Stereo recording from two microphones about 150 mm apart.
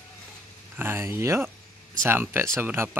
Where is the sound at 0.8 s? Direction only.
15° right (ahead or behind).